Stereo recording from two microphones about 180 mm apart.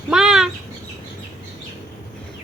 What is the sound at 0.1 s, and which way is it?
Bird, 5° right (ahead or behind).